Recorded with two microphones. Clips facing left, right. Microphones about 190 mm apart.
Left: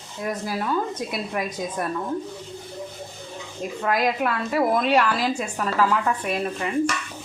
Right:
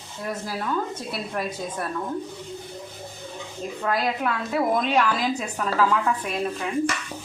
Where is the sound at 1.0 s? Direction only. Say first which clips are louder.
Left 2 dB; 15° left (ahead or behind).